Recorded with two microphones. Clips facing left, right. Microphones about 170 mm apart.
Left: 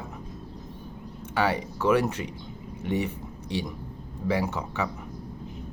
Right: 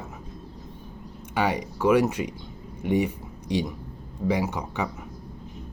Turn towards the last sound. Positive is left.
turn(degrees=-15)  # may be behind; listen again after turning